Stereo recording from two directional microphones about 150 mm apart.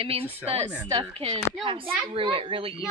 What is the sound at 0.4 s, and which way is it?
Speech, 5° right (ahead or behind).